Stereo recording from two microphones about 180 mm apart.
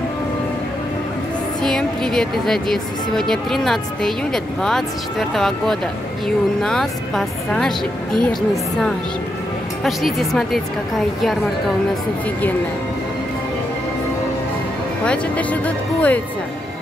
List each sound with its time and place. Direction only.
1.6 s a woman's voice: 5° left (ahead or behind)
9.8 s a woman's voice: centre (ahead or behind)
15.0 s speech: 10° left (ahead or behind)